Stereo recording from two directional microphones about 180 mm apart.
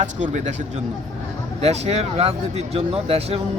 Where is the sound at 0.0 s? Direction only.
40° right (ahead or behind).